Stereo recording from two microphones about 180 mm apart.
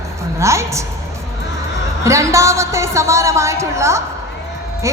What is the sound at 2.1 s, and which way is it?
A woman's voice, 15° right (ahead or behind).